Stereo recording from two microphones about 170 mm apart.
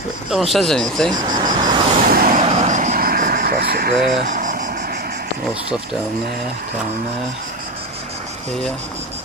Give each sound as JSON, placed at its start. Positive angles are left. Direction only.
{"t": 0.3, "sound": "speech", "side_deg": 0}
{"t": 1.1, "sound": "speech", "side_deg": -50}
{"t": 2.0, "sound": "vehicle", "side_deg": -60}
{"t": 2.4, "sound": "vehicle", "side_deg": -40}